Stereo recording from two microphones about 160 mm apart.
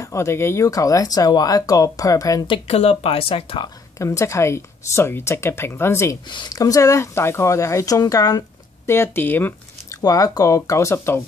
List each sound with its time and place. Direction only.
0.0 s speech: 20° left (ahead or behind)
2.4 s speech: 35° left (ahead or behind)
4.0 s speech: 20° left (ahead or behind)